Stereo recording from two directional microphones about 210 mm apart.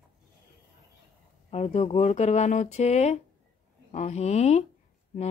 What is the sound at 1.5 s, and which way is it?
Speech, 30° left (ahead or behind).